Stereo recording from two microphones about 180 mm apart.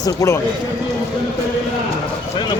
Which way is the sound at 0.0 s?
20° left (ahead or behind).